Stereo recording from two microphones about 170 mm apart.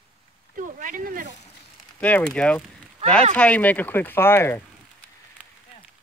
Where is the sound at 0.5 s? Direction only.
50° right (ahead or behind).